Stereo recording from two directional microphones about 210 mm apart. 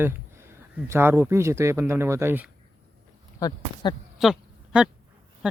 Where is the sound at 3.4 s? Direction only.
15° left (ahead or behind).